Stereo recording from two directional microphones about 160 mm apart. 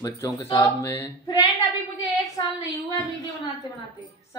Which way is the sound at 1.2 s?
25° left (ahead or behind).